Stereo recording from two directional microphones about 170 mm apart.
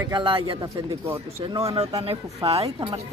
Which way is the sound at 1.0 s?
15° right (ahead or behind).